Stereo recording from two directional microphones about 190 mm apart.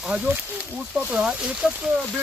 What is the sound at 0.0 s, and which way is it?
Speech, 5° right (ahead or behind).